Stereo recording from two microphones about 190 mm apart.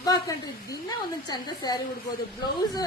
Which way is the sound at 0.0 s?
20° left (ahead or behind).